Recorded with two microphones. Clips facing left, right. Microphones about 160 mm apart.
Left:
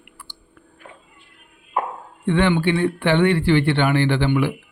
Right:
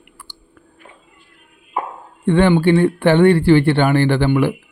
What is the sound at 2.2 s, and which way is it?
Speech, 40° right (ahead or behind).